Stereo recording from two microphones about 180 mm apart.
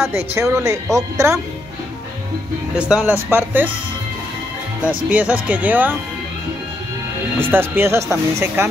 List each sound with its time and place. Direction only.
0.0 s speech: 15° right (ahead or behind)
2.7 s speech: 5° right (ahead or behind)
5.1 s speech: 10° right (ahead or behind)
7.3 s speech: 10° right (ahead or behind)